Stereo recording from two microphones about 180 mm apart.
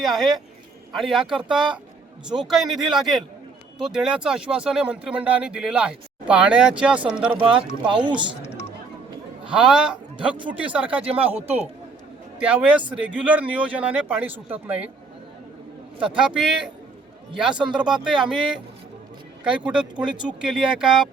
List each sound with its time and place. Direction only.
0.0 s speech: centre (ahead or behind)
2.6 s a man's voice: 25° right (ahead or behind)
2.9 s speech: centre (ahead or behind)
9.5 s a man's voice: 5° right (ahead or behind)
12.4 s speech: 10° right (ahead or behind)
16.0 s speech: 5° right (ahead or behind)